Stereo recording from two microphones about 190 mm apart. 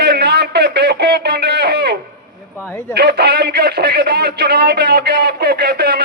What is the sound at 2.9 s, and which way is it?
Speech, 60° right (ahead or behind).